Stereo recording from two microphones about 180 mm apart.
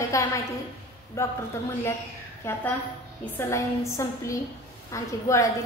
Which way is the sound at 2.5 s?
15° left (ahead or behind).